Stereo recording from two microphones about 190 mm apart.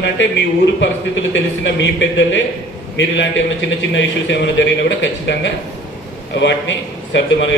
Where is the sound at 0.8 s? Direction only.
75° left (ahead or behind).